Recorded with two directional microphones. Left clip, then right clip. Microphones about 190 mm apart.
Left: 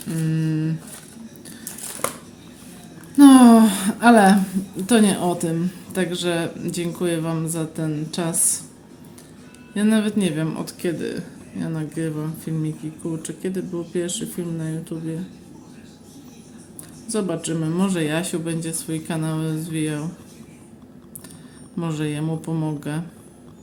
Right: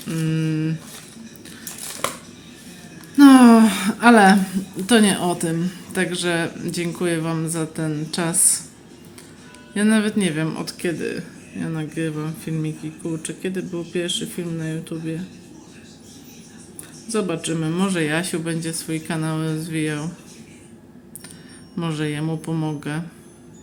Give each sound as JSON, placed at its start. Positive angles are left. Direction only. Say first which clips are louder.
{"t": 0.1, "sound": "a sound", "louder": "right 1 dB", "side_deg": 20}
{"t": 3.2, "sound": "a sound", "louder": "even", "side_deg": 15}
{"t": 4.9, "sound": "a woman's voice", "louder": "right 1 dB", "side_deg": 10}
{"t": 9.7, "sound": "a woman's voice", "louder": "right 1 dB", "side_deg": 10}
{"t": 17.1, "sound": "a woman's voice", "louder": "right 1 dB", "side_deg": 15}
{"t": 21.8, "sound": "a woman's voice", "louder": "right 1 dB", "side_deg": 15}